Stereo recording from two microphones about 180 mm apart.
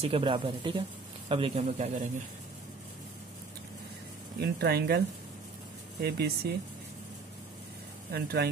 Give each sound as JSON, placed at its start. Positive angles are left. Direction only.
{"t": 0.0, "sound": "a man's voice", "side_deg": -30}
{"t": 4.4, "sound": "speech", "side_deg": -60}
{"t": 8.1, "sound": "speech", "side_deg": -60}